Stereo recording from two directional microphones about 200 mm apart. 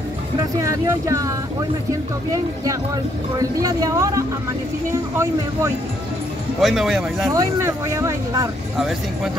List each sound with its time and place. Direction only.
0.8 s speech: 15° right (ahead or behind)
2.3 s speech: 15° right (ahead or behind)
6.6 s a man's voice: centre (ahead or behind)
7.3 s speech: 15° right (ahead or behind)
8.7 s a man's voice: centre (ahead or behind)